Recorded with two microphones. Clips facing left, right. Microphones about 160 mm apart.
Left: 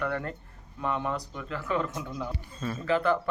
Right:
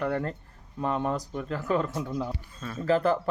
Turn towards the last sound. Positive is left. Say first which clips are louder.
# right 2 dB
turn(degrees=-35)  # may be behind; listen again after turning